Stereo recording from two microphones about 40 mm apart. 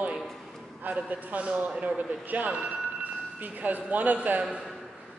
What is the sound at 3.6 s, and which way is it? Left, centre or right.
Speech, right.